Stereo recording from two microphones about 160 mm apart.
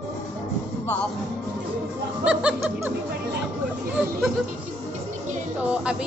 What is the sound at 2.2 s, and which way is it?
Music, 5° right (ahead or behind).